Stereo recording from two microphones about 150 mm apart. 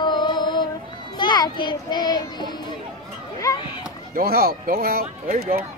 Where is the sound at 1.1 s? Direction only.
30° left (ahead or behind).